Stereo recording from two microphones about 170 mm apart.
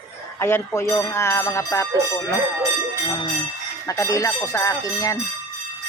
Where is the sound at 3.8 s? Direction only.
20° left (ahead or behind).